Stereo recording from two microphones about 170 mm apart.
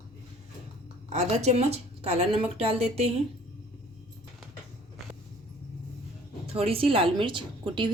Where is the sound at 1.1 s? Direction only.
40° right (ahead or behind).